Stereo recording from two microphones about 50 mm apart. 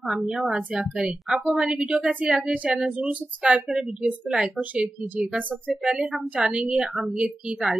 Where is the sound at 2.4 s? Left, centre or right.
Right.